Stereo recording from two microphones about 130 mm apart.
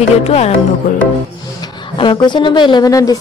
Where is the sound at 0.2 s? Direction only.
50° left (ahead or behind).